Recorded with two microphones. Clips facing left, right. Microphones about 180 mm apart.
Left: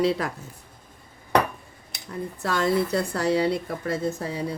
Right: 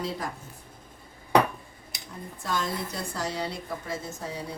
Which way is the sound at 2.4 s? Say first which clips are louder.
Left 8 dB; 70° left (ahead or behind).